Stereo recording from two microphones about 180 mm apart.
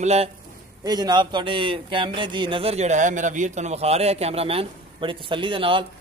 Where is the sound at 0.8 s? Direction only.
25° right (ahead or behind).